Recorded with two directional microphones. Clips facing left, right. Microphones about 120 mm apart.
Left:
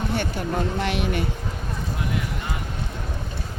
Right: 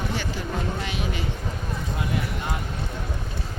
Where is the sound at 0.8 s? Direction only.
60° left (ahead or behind).